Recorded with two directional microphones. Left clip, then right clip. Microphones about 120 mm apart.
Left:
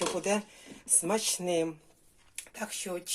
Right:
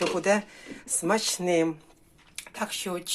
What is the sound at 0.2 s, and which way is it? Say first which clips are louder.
Speech: right 6 dB; 30° left (ahead or behind).